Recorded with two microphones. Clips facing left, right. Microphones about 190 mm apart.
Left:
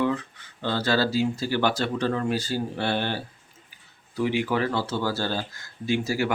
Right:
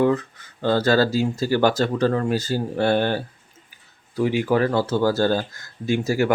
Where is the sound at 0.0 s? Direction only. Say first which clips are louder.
Right 6 dB; 45° right (ahead or behind).